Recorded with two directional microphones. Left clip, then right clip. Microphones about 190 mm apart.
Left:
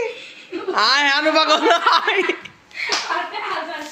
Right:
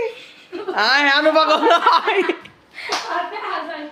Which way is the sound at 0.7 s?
10° right (ahead or behind).